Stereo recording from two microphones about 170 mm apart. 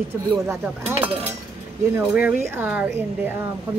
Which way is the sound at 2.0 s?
10° right (ahead or behind).